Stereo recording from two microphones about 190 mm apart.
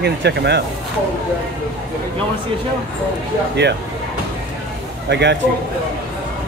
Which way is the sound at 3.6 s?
65° right (ahead or behind).